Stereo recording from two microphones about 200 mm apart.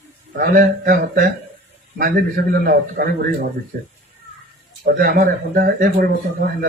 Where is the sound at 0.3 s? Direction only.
50° right (ahead or behind).